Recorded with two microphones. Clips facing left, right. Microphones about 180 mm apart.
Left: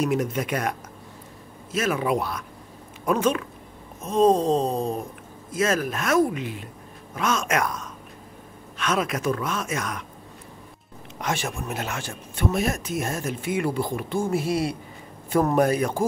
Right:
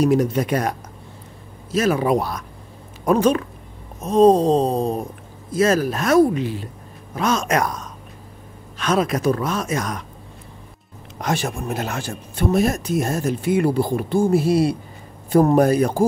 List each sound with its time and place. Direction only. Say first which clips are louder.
0.0 s speech: right 6 dB; 35° right (ahead or behind)
11.1 s speech: right 5 dB; 35° right (ahead or behind)